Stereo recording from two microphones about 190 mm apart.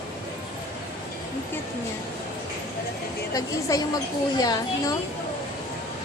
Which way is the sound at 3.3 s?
20° left (ahead or behind).